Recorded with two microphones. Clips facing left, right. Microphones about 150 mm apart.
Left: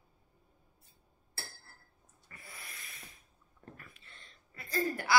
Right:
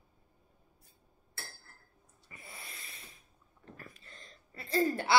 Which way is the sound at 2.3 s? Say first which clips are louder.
Right 2 dB; 25° right (ahead or behind).